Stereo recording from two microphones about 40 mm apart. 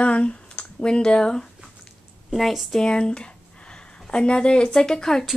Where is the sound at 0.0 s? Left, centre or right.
Left.